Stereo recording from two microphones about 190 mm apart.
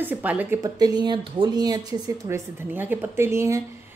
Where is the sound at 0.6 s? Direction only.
20° right (ahead or behind).